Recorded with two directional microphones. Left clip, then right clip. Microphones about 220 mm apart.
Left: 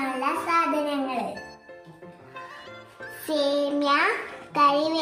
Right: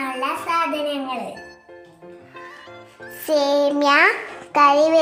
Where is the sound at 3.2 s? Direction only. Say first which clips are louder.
Right 7 dB; 35° right (ahead or behind).